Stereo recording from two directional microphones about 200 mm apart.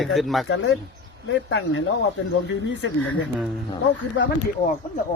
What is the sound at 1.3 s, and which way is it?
Speech, 80° left.